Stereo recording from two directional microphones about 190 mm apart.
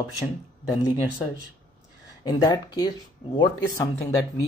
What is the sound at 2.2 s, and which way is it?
Speech, 20° left (ahead or behind).